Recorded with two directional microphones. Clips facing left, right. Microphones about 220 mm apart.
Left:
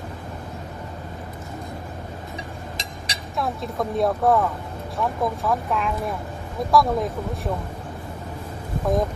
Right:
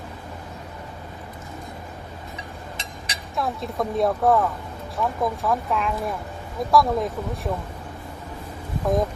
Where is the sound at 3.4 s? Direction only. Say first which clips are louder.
Even; centre (ahead or behind).